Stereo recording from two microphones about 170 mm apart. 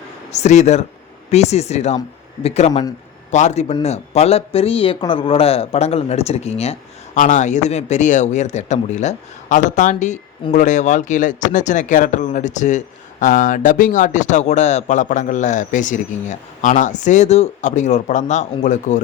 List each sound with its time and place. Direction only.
0.3 s speech: 40° left (ahead or behind)